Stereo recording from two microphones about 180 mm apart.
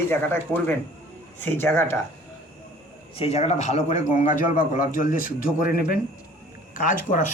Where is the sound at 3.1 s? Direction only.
35° left (ahead or behind).